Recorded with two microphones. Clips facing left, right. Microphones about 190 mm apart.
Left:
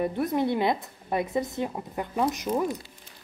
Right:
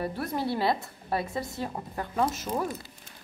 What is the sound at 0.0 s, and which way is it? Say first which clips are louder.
A woman's voice: left 5 dB; 20° left (ahead or behind).